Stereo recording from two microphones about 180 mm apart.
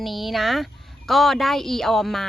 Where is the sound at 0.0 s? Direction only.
Centre (ahead or behind).